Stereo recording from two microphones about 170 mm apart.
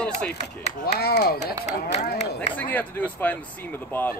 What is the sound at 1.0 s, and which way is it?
Speech, 65° left (ahead or behind).